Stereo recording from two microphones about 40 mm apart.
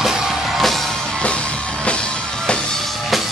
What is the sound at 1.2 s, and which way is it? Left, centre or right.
Music, left.